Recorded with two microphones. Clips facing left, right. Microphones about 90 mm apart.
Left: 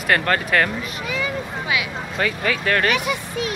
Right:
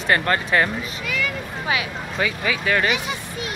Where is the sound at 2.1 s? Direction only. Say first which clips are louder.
Left 1 dB; 5° right (ahead or behind).